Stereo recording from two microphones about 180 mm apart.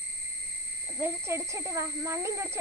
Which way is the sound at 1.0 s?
15° right (ahead or behind).